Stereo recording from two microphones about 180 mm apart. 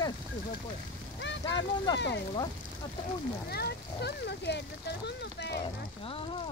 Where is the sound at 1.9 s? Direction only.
75° left (ahead or behind).